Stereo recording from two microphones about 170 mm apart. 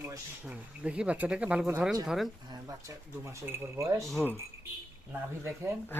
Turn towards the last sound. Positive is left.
turn(degrees=-15)  # may be behind; listen again after turning